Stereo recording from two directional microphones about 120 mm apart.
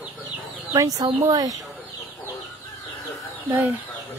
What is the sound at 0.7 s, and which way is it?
Speech, 30° right (ahead or behind).